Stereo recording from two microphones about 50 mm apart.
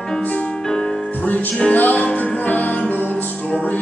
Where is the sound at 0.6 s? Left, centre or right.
Centre.